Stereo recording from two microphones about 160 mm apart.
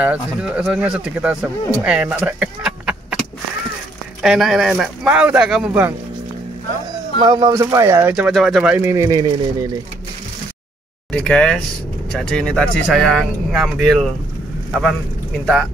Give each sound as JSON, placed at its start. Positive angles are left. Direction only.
{"t": 0.0, "sound": "speech", "side_deg": -10}
{"t": 4.2, "sound": "speech", "side_deg": 0}
{"t": 7.2, "sound": "speech", "side_deg": -30}
{"t": 11.1, "sound": "speech", "side_deg": 5}